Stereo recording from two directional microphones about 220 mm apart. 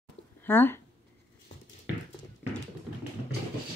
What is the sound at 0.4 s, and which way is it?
Speech, 10° left (ahead or behind).